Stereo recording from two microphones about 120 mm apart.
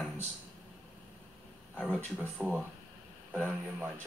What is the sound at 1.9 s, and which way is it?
Speech, 15° right (ahead or behind).